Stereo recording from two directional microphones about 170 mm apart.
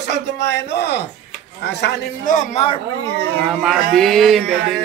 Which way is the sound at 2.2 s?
45° left (ahead or behind).